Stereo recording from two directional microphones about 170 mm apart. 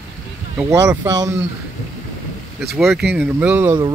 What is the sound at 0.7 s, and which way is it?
Speech, 20° right (ahead or behind).